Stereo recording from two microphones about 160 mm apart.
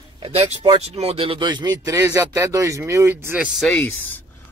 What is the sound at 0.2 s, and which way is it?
Speech, 35° right (ahead or behind).